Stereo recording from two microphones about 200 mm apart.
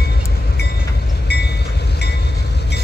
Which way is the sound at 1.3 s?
55° left (ahead or behind).